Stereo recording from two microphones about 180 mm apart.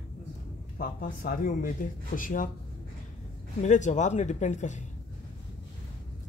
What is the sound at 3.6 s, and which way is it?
Speech, 40° left (ahead or behind).